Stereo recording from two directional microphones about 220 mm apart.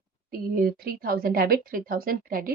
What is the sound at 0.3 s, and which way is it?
A woman's voice, 40° right (ahead or behind).